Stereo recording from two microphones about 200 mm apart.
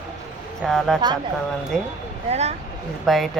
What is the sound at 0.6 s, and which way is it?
Speech, centre (ahead or behind).